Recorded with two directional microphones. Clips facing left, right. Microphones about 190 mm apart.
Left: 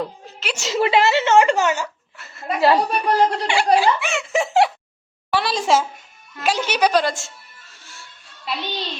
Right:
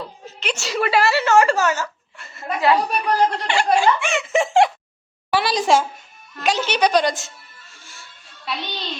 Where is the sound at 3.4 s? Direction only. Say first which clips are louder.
Left 1 dB; 10° left (ahead or behind).